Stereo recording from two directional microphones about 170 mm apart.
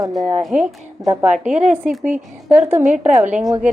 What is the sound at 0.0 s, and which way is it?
Speech, 20° right (ahead or behind).